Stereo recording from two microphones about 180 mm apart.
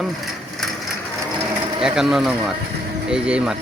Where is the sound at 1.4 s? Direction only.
Centre (ahead or behind).